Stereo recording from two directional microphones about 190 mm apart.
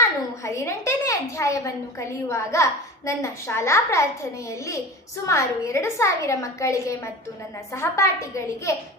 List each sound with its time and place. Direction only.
0.4 s a woman's voice: 15° left (ahead or behind)